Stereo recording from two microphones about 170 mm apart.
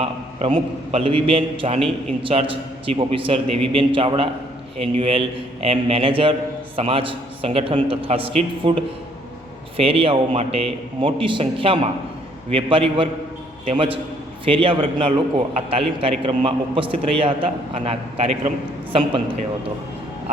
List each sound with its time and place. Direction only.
0.0 s a man's voice: 35° right (ahead or behind)